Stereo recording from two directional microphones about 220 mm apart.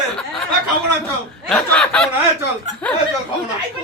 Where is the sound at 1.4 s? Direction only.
5° left (ahead or behind).